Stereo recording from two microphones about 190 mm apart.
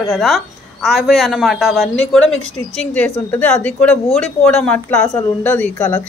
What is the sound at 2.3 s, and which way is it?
Speech, 90° left.